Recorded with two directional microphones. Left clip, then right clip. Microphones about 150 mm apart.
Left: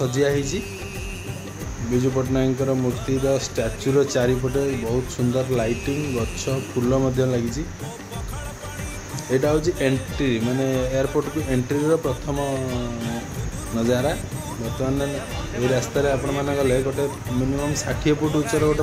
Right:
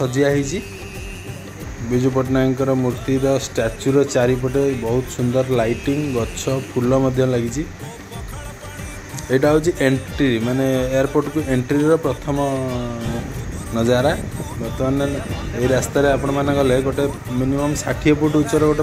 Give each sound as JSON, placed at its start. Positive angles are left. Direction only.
{"t": 0.0, "sound": "speech", "side_deg": -5}
{"t": 2.0, "sound": "speech", "side_deg": -15}
{"t": 3.8, "sound": "speech", "side_deg": -5}
{"t": 6.9, "sound": "speech", "side_deg": -10}
{"t": 9.3, "sound": "speech", "side_deg": -15}
{"t": 11.2, "sound": "speech", "side_deg": -10}
{"t": 13.7, "sound": "speech", "side_deg": -20}
{"t": 14.8, "sound": "speech", "side_deg": -5}
{"t": 15.9, "sound": "speech", "side_deg": -15}
{"t": 17.3, "sound": "speech", "side_deg": 0}